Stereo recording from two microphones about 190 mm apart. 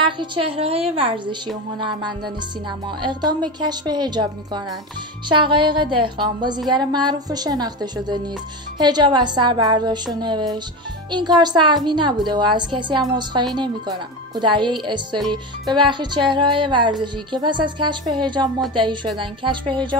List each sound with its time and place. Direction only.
0.0 s a woman's voice: 25° right (ahead or behind)
5.3 s a woman's voice: 25° right (ahead or behind)